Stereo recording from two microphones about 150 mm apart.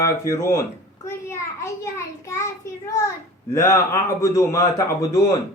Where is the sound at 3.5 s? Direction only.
20° left (ahead or behind).